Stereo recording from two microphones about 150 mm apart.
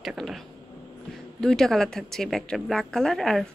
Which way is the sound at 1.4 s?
5° left (ahead or behind).